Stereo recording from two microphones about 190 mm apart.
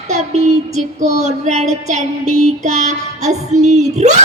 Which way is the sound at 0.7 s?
35° right (ahead or behind).